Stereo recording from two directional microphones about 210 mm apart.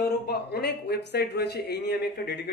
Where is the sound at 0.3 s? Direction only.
50° left (ahead or behind).